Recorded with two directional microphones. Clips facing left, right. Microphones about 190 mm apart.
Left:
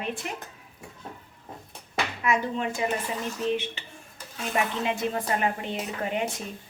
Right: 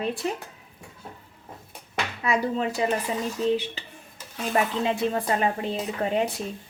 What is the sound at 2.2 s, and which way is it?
Speech, 35° right (ahead or behind).